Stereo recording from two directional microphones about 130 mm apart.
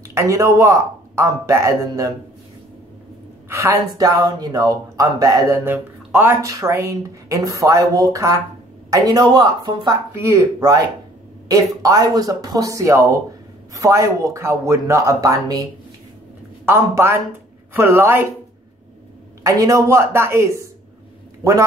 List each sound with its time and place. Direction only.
0.1 s speech: 25° right (ahead or behind)
3.4 s speech: 20° right (ahead or behind)
10.1 s speech: 20° right (ahead or behind)
16.6 s a woman's voice: 20° right (ahead or behind)
19.4 s speech: 25° right (ahead or behind)